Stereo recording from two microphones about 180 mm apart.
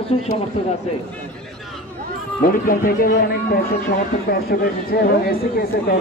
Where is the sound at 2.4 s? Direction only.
50° left (ahead or behind).